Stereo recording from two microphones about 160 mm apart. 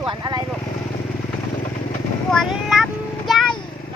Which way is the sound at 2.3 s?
Centre (ahead or behind).